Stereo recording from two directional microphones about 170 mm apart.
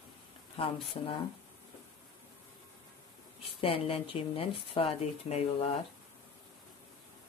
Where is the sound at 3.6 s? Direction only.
30° left (ahead or behind).